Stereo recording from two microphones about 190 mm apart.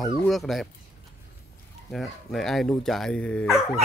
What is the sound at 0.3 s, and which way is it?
Speech, centre (ahead or behind).